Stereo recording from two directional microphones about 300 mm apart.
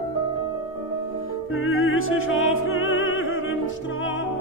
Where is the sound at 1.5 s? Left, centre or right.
Left.